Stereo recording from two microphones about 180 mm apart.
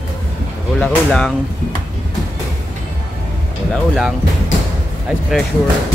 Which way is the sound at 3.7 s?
Centre (ahead or behind).